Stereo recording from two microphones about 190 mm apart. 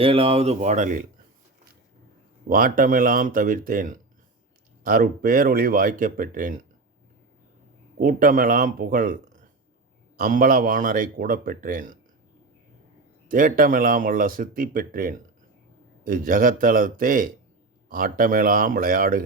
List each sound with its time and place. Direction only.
0.0 s speech: 30° right (ahead or behind)
2.5 s speech: 45° right (ahead or behind)
7.9 s speech: 45° right (ahead or behind)
13.2 s speech: 45° right (ahead or behind)